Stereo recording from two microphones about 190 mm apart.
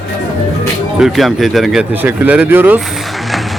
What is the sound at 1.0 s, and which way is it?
Speech, centre (ahead or behind).